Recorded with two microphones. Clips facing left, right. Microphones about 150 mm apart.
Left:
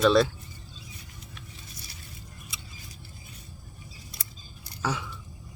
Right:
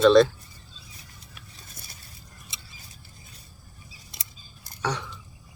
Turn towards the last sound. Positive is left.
turn(degrees=5)  # may be behind; listen again after turning